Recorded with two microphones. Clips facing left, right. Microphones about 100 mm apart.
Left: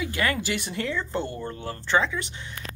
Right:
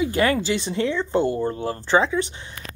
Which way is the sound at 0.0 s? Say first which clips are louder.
Right 7 dB; 30° right (ahead or behind).